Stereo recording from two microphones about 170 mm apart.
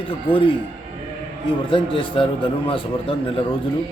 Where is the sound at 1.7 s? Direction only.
30° left (ahead or behind).